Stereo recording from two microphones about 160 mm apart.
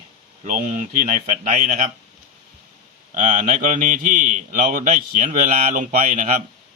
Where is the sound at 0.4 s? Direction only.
55° right (ahead or behind).